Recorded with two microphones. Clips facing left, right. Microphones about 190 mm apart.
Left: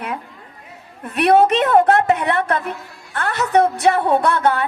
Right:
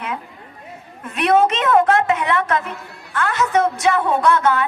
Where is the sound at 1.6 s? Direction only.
35° left (ahead or behind).